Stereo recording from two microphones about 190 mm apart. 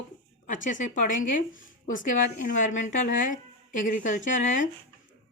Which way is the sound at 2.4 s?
40° left (ahead or behind).